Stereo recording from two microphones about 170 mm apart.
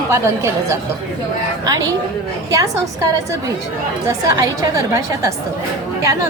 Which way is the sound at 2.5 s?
20° right (ahead or behind).